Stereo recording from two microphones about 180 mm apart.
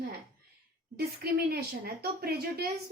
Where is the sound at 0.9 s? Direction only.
60° right (ahead or behind).